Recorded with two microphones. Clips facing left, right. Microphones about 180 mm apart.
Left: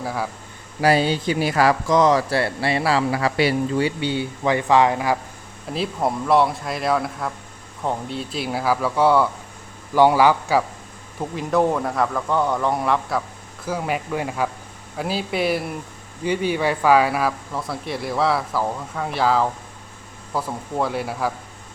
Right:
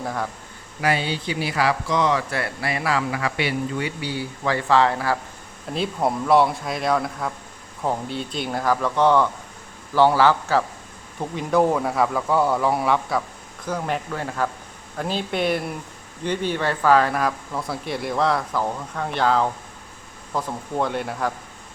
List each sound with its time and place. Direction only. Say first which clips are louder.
0.0 s a man's voice: left 1 dB; 5° left (ahead or behind)
0.8 s speech: left 5 dB; 35° left (ahead or behind); by 5.1 s 15° left (ahead or behind)
5.7 s speech: even; centre (ahead or behind)
11.2 s speech: even; centre (ahead or behind)